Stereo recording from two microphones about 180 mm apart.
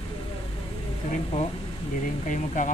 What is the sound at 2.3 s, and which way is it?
Speech, 45° left (ahead or behind).